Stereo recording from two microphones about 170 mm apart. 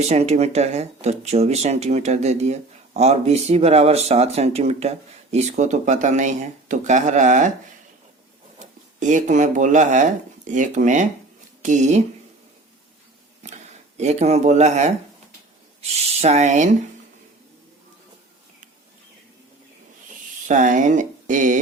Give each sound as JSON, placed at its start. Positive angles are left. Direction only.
{"t": 0.0, "sound": "speech", "side_deg": -40}
{"t": 8.5, "sound": "speech", "side_deg": -45}
{"t": 13.4, "sound": "speech", "side_deg": -40}
{"t": 20.5, "sound": "speech", "side_deg": -50}